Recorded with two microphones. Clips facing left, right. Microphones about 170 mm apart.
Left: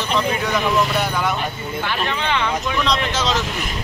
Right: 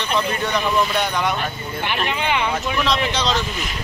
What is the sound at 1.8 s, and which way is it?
Speech, 15° right (ahead or behind).